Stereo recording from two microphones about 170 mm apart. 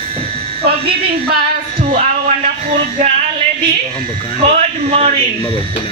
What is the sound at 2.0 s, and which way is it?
Music, 45° right (ahead or behind).